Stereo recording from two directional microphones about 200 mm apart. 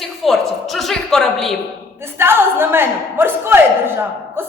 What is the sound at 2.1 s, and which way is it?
A man's voice, 10° right (ahead or behind).